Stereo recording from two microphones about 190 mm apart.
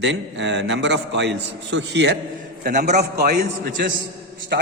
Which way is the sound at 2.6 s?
40° right (ahead or behind).